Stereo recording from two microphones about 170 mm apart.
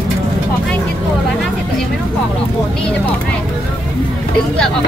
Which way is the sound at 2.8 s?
5° left (ahead or behind).